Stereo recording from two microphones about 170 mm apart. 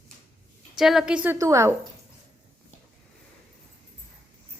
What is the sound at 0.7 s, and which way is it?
Speech, centre (ahead or behind).